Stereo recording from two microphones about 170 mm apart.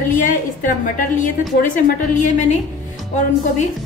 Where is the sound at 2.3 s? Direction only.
45° left (ahead or behind).